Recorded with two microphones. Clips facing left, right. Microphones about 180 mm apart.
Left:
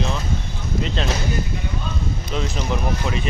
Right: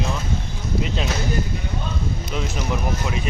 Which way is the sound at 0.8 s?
10° right (ahead or behind).